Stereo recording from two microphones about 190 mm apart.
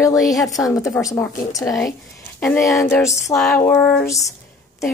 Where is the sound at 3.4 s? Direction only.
5° left (ahead or behind).